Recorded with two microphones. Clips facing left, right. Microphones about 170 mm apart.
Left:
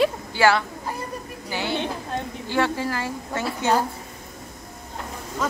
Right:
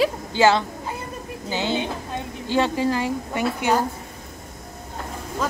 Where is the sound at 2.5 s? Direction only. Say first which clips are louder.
Right 3 dB; 15° right (ahead or behind).